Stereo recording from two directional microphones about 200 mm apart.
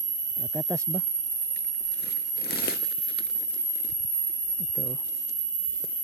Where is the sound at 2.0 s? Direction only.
55° left (ahead or behind).